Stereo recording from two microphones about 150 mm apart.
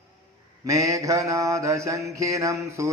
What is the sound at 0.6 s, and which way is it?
Mantra, 20° right (ahead or behind).